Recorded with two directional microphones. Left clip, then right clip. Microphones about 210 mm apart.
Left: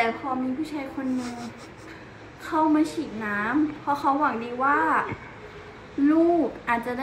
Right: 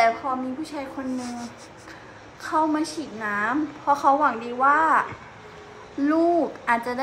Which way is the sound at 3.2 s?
20° right (ahead or behind).